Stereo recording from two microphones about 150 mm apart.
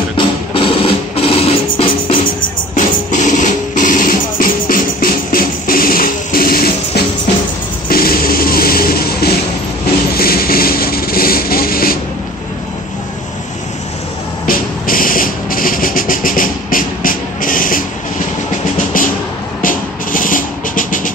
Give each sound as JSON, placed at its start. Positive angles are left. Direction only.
{"t": 0.6, "sound": "music", "side_deg": 35}
{"t": 2.7, "sound": "music", "side_deg": 55}
{"t": 7.9, "sound": "music", "side_deg": 80}
{"t": 10.1, "sound": "a sound", "side_deg": 90}
{"t": 14.4, "sound": "vehicle", "side_deg": 70}
{"t": 18.9, "sound": "a sound", "side_deg": 65}
{"t": 19.6, "sound": "music", "side_deg": 65}